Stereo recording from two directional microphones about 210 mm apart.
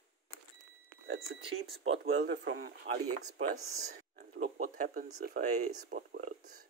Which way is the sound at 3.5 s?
40° right (ahead or behind).